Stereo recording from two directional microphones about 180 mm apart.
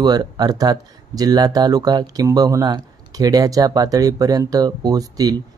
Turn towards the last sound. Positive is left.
turn(degrees=-20)  # may be behind; listen again after turning